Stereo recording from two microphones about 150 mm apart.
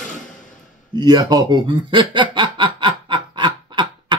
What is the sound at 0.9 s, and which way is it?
Chuckle, 25° right (ahead or behind).